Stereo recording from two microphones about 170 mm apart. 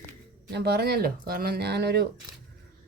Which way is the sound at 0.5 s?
70° right (ahead or behind).